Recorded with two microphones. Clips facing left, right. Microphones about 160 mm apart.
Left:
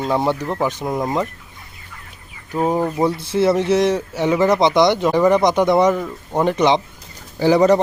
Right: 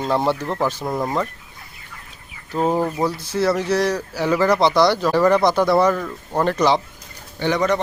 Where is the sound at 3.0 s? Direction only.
25° left (ahead or behind).